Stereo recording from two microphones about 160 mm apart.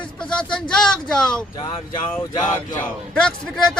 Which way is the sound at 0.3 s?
5° left (ahead or behind).